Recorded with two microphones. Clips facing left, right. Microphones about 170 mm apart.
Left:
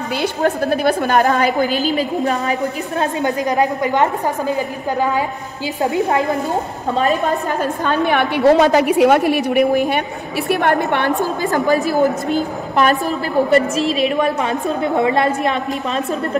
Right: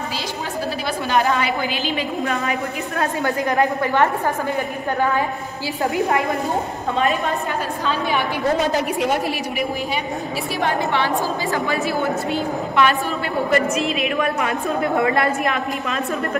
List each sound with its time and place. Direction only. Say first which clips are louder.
0.2 s a woman's voice: left 8 dB; 55° left (ahead or behind); by 2.5 s 40° left (ahead or behind)
3.0 s a woman's voice: left 3 dB; 20° left (ahead or behind)
5.8 s a woman's voice: left 3 dB; 20° left (ahead or behind)
7.0 s a woman's voice: left 4 dB; 40° left (ahead or behind)
7.8 s a woman's voice: left 5 dB; 55° left (ahead or behind); by 9.2 s 75° left (ahead or behind)
9.3 s a woman's voice: left 10 dB; 55° left (ahead or behind)
11.5 s a woman's voice: left 9 dB; 40° left (ahead or behind)